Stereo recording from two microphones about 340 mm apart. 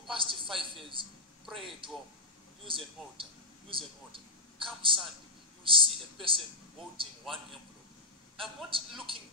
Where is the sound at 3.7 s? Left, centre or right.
Centre.